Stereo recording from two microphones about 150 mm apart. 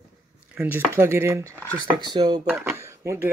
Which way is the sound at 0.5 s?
15° right (ahead or behind).